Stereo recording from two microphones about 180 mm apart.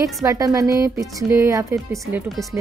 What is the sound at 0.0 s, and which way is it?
A woman's voice, 15° right (ahead or behind).